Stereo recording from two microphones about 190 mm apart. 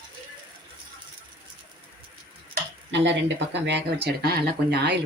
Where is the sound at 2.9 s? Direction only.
70° right (ahead or behind).